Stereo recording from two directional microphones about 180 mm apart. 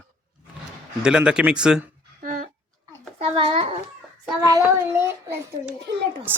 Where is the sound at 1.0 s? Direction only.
5° right (ahead or behind).